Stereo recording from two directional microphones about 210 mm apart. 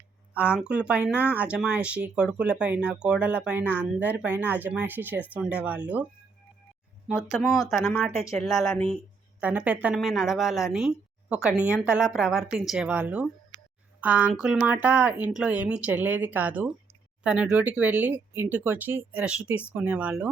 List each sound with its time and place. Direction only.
0.3 s speech: 5° right (ahead or behind)
7.4 s speech: 15° left (ahead or behind)
7.7 s speech: centre (ahead or behind)
9.4 s speech: 5° right (ahead or behind)